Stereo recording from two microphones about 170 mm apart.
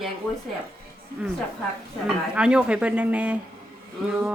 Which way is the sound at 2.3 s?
5° right (ahead or behind).